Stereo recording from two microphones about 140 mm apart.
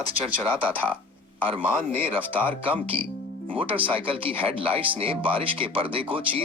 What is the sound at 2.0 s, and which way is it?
Speech, 15° left (ahead or behind).